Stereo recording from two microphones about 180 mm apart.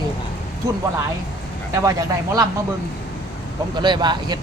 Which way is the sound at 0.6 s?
15° right (ahead or behind).